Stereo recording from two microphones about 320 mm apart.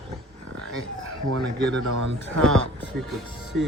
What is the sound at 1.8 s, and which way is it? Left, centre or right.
Speech, right.